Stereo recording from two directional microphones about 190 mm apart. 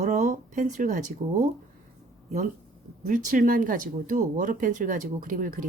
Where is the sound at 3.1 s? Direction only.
45° right (ahead or behind).